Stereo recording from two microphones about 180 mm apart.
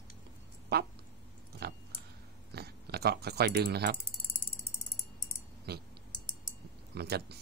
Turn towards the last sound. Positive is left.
turn(degrees=-65)  # may be behind; listen again after turning